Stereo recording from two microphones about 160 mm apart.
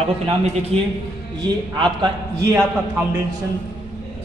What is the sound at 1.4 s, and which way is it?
Speech, 30° right (ahead or behind).